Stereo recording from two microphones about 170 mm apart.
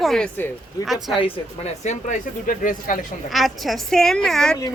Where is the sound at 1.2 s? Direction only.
40° left (ahead or behind).